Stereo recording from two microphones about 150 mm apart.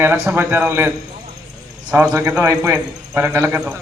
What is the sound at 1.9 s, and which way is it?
A man's voice, 15° right (ahead or behind).